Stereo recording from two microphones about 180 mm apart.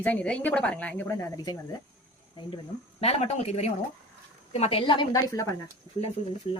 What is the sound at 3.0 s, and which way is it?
A woman's voice, 35° left (ahead or behind).